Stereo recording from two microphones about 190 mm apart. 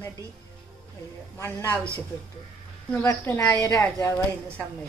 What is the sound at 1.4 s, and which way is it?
Speech, 15° left (ahead or behind).